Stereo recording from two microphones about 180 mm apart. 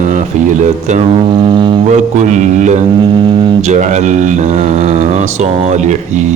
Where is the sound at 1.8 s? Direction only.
40° right (ahead or behind).